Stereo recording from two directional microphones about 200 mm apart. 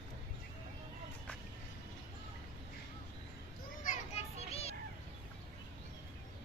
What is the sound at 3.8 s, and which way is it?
Children playing, 30° left (ahead or behind).